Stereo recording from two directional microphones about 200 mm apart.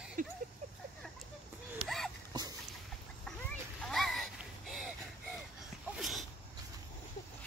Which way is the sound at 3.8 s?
Centre (ahead or behind).